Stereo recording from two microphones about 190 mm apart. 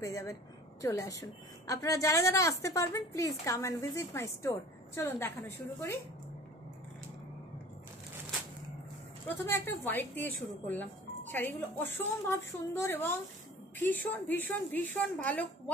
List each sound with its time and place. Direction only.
0.0 s speech: 15° left (ahead or behind)
9.3 s speech: 10° left (ahead or behind)